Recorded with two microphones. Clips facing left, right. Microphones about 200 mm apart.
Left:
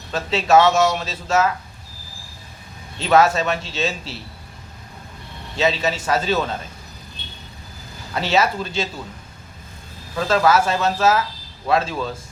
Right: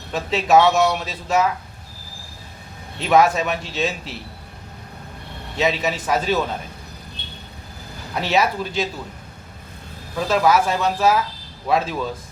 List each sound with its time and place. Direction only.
0.1 s a man's voice: 15° right (ahead or behind)
3.0 s a man's voice: 15° right (ahead or behind)
5.5 s a man's voice: 15° right (ahead or behind)
8.1 s a man's voice: 15° right (ahead or behind)
10.2 s a man's voice: 10° right (ahead or behind)